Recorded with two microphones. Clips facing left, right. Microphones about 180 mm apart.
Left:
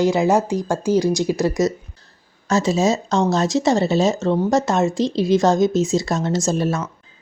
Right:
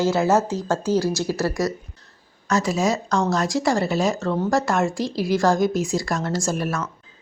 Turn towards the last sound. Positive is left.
turn(degrees=25)  # may be behind; listen again after turning